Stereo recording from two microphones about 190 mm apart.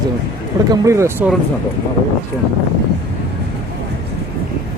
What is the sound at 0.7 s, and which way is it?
Speech, 15° right (ahead or behind).